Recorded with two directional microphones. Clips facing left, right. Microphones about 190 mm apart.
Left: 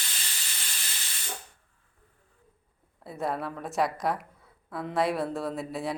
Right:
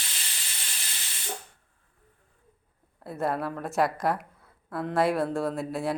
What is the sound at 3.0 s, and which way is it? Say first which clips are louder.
A woman's voice: right 3 dB; centre (ahead or behind).